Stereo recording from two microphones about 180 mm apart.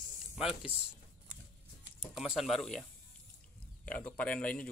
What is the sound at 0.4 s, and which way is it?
Speech, 5° right (ahead or behind).